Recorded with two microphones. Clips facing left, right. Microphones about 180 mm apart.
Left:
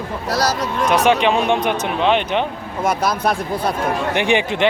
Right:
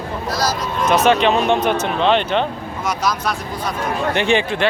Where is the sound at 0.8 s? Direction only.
15° left (ahead or behind).